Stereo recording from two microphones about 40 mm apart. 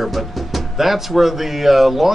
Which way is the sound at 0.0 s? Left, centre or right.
Centre.